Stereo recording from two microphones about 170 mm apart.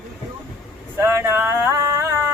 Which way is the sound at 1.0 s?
15° right (ahead or behind).